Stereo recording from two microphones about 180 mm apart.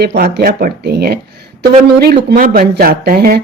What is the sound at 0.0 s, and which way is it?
Speech, 60° right (ahead or behind).